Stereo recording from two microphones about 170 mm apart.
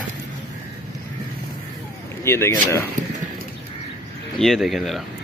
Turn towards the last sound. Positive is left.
turn(degrees=0)  # may be behind; listen again after turning